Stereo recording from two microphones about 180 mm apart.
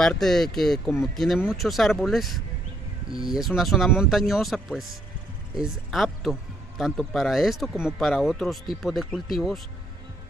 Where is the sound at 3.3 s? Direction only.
Centre (ahead or behind).